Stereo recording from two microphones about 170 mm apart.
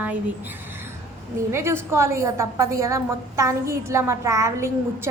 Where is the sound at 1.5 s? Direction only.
15° right (ahead or behind).